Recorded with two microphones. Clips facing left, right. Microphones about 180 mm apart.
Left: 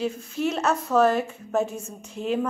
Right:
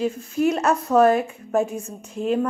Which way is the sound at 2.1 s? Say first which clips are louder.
Right 4 dB; 5° left (ahead or behind).